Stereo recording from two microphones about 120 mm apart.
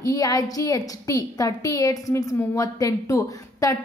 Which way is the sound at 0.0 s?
30° left (ahead or behind).